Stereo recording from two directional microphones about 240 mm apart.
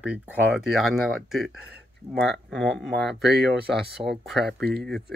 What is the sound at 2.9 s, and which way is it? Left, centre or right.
Speech, right.